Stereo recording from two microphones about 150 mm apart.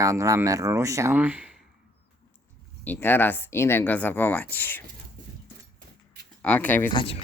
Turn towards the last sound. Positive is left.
turn(degrees=35)  # may be behind; listen again after turning